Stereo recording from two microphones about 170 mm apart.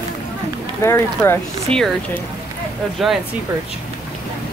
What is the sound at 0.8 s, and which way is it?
Speech, 15° left (ahead or behind).